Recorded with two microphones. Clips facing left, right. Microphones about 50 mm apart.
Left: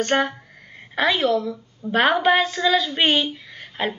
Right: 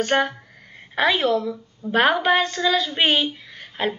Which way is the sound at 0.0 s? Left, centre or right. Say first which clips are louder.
Even; centre.